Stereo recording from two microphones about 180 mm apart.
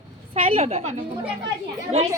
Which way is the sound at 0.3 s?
30° right (ahead or behind).